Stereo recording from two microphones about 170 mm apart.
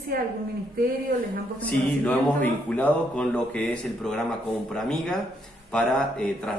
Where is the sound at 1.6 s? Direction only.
10° left (ahead or behind).